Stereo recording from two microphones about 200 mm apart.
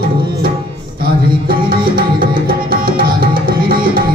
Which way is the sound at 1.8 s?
45° right (ahead or behind).